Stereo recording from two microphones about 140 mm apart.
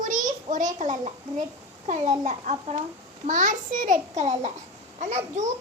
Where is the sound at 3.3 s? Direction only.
65° right (ahead or behind).